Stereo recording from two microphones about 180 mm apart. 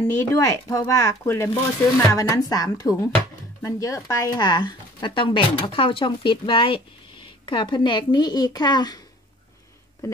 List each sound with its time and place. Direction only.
0.3 s speech: 15° left (ahead or behind)